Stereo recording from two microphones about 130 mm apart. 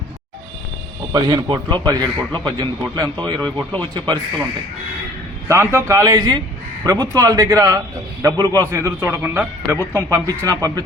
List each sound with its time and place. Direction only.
1.1 s a man's voice: 35° right (ahead or behind)
5.5 s a man's voice: 20° right (ahead or behind)